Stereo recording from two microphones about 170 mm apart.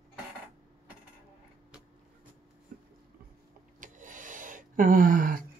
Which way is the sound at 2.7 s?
60° right (ahead or behind).